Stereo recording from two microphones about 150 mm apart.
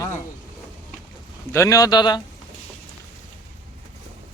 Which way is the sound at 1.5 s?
20° left (ahead or behind).